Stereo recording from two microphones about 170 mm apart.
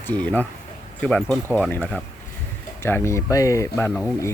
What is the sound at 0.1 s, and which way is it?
Speech, 10° left (ahead or behind).